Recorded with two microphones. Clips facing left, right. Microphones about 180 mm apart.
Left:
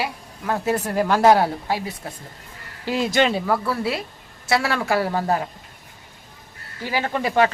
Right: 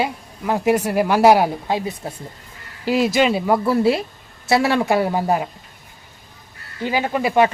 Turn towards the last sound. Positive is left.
turn(degrees=-15)  # may be behind; listen again after turning